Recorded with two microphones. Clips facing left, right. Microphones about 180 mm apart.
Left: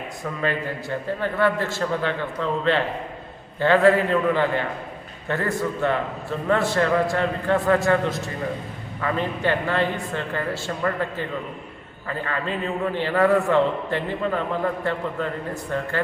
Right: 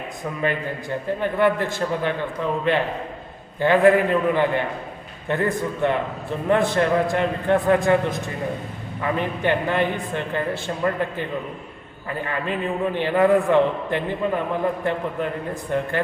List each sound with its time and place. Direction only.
0.4 s a man's voice: 15° right (ahead or behind)